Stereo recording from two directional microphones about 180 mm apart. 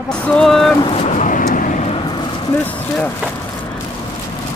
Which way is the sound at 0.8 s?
35° left (ahead or behind).